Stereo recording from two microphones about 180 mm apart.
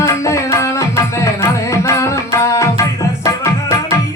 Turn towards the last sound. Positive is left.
turn(degrees=20)  # may be behind; listen again after turning